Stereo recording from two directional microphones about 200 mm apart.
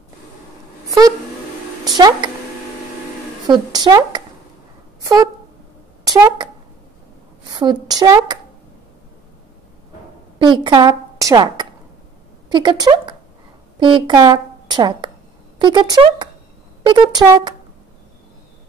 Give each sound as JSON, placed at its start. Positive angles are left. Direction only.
{"t": 0.8, "sound": "a sound", "side_deg": -20}
{"t": 2.0, "sound": "a woman's voice", "side_deg": -20}
{"t": 3.4, "sound": "a woman's voice", "side_deg": -20}
{"t": 7.5, "sound": "a woman's voice", "side_deg": -20}
{"t": 10.4, "sound": "a woman's voice", "side_deg": -25}